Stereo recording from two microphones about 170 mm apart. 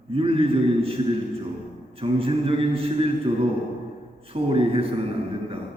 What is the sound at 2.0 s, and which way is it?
A man's voice, 35° right (ahead or behind).